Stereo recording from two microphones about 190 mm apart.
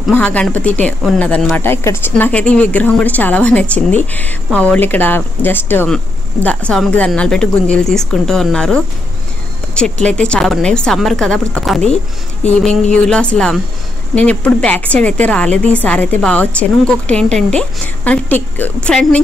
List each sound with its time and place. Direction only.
0.1 s a woman's voice: 5° left (ahead or behind)
10.0 s a woman's voice: 5° left (ahead or behind)